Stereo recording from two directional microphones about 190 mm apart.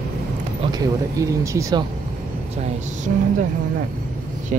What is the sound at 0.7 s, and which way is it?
Speech, 20° right (ahead or behind).